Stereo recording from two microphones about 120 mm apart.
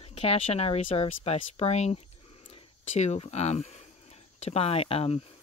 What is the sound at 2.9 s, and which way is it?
Speech, 70° left (ahead or behind).